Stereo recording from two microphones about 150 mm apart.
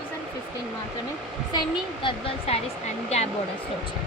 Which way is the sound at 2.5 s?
40° left (ahead or behind).